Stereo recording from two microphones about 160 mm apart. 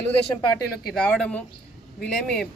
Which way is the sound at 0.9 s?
5° left (ahead or behind).